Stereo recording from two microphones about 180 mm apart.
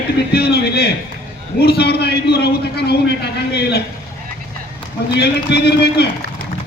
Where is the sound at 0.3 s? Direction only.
60° left (ahead or behind).